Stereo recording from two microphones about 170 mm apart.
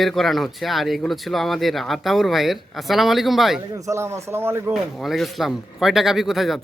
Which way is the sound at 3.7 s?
20° right (ahead or behind).